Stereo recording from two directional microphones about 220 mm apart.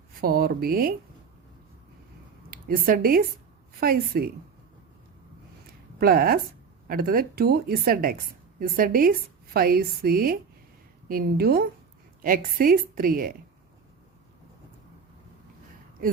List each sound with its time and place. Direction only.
0.2 s a woman's voice: 45° right (ahead or behind)
2.5 s a woman's voice: 40° right (ahead or behind)
6.0 s a woman's voice: 45° right (ahead or behind)